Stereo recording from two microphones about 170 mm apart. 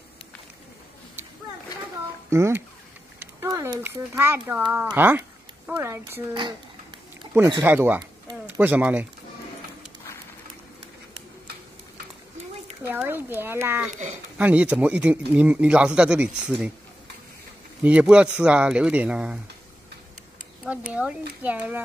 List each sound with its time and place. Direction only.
2.2 s speech: 15° right (ahead or behind)
3.2 s a sound: 15° right (ahead or behind)
3.8 s speech: 15° right (ahead or behind)
7.6 s speech: 10° right (ahead or behind)
12.8 s speech: 10° right (ahead or behind)
17.8 s speech: 5° right (ahead or behind)
20.6 s speech: 5° right (ahead or behind)